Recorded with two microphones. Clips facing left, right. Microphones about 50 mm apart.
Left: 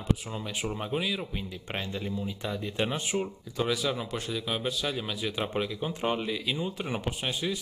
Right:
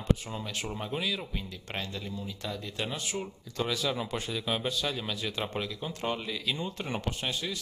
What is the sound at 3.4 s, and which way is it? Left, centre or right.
Speech, centre.